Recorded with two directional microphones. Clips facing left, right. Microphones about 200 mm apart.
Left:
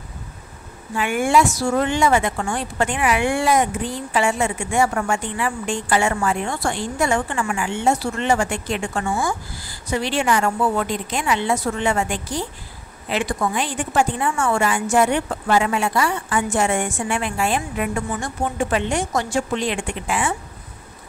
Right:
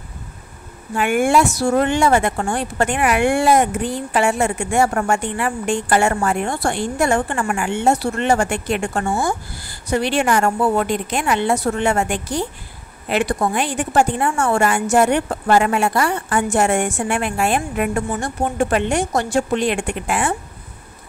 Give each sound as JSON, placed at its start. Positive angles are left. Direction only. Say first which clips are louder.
{"t": 0.9, "sound": "a woman's voice", "louder": "right 2 dB", "side_deg": -55}
{"t": 1.7, "sound": "a woman's voice", "louder": "right 3 dB", "side_deg": -50}
{"t": 8.1, "sound": "a woman's voice", "louder": "right 3 dB", "side_deg": -50}
{"t": 16.8, "sound": "a woman's voice", "louder": "right 3 dB", "side_deg": -65}